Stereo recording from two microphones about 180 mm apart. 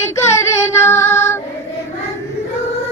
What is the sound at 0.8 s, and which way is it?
Music, 15° left (ahead or behind).